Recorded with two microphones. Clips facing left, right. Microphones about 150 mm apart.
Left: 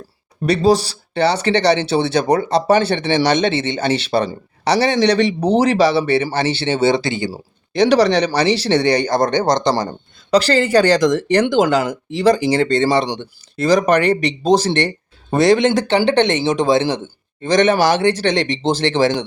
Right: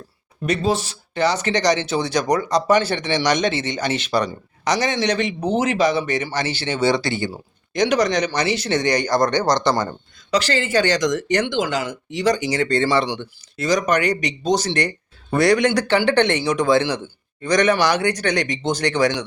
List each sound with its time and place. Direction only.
0.4 s speech: 35° left (ahead or behind); by 7.3 s 20° left (ahead or behind)
7.3 s speech: 30° left (ahead or behind)
10.3 s speech: 35° left (ahead or behind); by 13.1 s 20° left (ahead or behind)
13.6 s speech: 30° left (ahead or behind)